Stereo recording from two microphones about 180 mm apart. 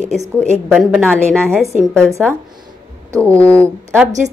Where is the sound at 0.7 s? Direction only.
Centre (ahead or behind).